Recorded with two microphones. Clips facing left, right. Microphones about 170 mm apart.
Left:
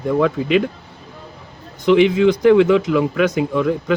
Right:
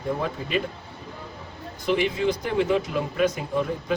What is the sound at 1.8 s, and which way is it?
Speech, 90° left.